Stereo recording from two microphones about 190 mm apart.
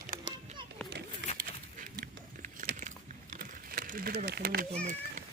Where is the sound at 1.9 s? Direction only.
55° right (ahead or behind).